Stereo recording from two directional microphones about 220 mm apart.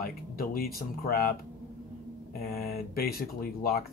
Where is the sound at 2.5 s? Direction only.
45° left (ahead or behind).